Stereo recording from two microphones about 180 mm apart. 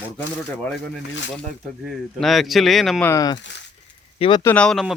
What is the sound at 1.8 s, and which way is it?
Speech, centre (ahead or behind).